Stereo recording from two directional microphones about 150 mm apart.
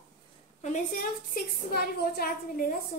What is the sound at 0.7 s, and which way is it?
A woman's voice, 65° left (ahead or behind).